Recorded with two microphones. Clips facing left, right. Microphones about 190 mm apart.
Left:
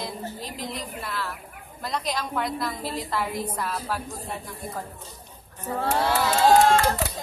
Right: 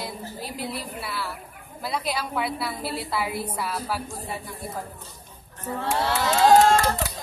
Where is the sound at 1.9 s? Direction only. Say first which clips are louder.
Right 1 dB; 5° right (ahead or behind).